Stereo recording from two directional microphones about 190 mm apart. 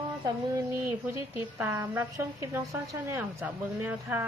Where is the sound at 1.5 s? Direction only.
15° right (ahead or behind).